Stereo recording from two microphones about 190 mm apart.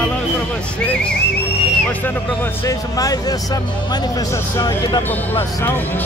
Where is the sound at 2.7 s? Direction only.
20° left (ahead or behind).